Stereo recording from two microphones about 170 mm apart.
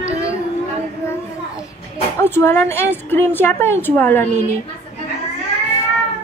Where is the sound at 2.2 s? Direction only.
15° left (ahead or behind).